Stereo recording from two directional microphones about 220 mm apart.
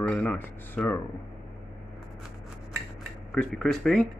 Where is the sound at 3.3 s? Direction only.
5° left (ahead or behind).